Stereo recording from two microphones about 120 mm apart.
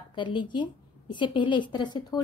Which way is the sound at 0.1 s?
40° left (ahead or behind).